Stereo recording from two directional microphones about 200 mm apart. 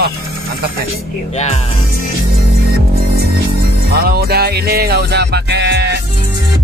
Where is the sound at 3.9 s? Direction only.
50° right (ahead or behind).